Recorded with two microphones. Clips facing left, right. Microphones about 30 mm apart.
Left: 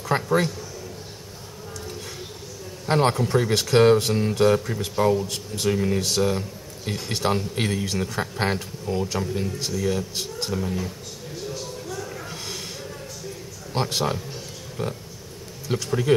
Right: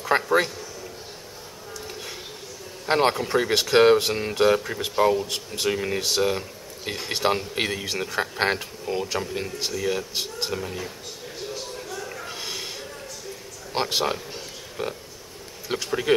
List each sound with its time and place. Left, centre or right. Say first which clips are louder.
0.0 s a man's voice: right 1 dB; centre
2.9 s speech: even; centre
11.3 s a sound: left 1 dB; centre
15.7 s speech: left 1 dB; centre